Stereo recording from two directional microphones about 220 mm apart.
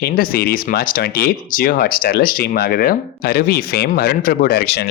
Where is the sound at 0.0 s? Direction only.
40° left (ahead or behind).